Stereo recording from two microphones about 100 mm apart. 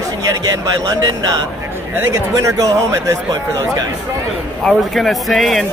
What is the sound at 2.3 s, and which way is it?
Speech, 35° right (ahead or behind).